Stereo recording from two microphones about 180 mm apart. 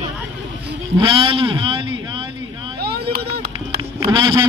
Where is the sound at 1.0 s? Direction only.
30° right (ahead or behind).